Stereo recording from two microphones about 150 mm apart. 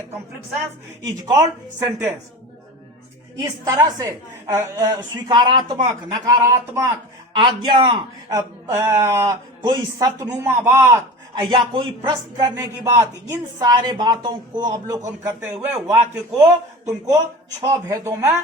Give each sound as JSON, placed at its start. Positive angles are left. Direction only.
{"t": 1.0, "sound": "a woman's voice", "side_deg": -25}
{"t": 3.3, "sound": "a woman's voice", "side_deg": -25}
{"t": 7.3, "sound": "a woman's voice", "side_deg": -30}
{"t": 10.2, "sound": "a man's voice", "side_deg": -15}
{"t": 11.5, "sound": "a man's voice", "side_deg": -35}
{"t": 12.0, "sound": "a woman's voice", "side_deg": -25}